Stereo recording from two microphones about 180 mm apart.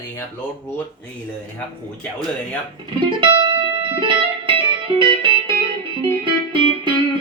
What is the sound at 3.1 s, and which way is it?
Music, 25° right (ahead or behind).